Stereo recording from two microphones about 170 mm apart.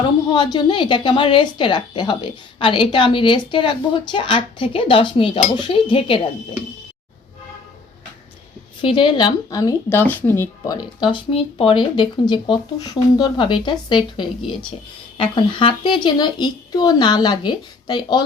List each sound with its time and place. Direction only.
0.3 s speech: 25° left (ahead or behind)
8.8 s speech: 30° left (ahead or behind)